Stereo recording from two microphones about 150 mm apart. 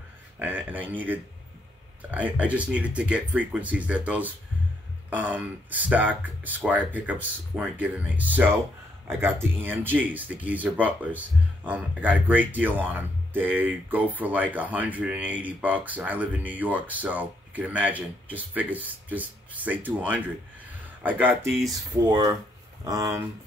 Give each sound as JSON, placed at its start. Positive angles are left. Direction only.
{"t": 0.4, "sound": "speech", "side_deg": -10}
{"t": 21.7, "sound": "speech", "side_deg": -25}